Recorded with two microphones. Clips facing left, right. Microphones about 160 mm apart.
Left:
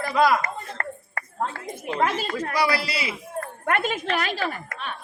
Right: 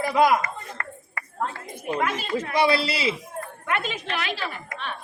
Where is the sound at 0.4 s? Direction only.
40° left (ahead or behind).